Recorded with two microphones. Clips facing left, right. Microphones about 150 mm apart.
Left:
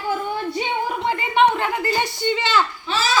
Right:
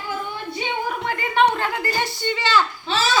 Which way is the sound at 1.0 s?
20° left (ahead or behind).